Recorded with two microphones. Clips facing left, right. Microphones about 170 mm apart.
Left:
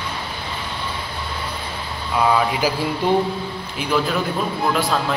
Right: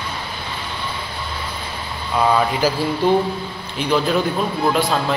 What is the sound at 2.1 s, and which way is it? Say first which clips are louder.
Speech: right 1 dB; 5° left (ahead or behind).